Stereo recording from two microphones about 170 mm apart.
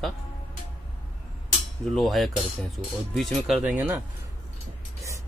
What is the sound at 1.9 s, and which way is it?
Speech, centre (ahead or behind).